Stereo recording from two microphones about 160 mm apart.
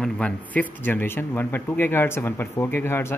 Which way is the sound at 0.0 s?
10° left (ahead or behind).